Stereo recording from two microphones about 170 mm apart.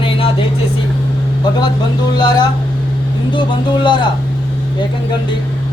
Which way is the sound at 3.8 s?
30° left (ahead or behind).